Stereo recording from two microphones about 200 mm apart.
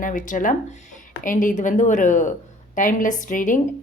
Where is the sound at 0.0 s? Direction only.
40° left (ahead or behind).